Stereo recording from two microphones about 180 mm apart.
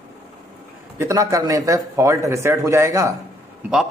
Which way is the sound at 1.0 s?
20° right (ahead or behind).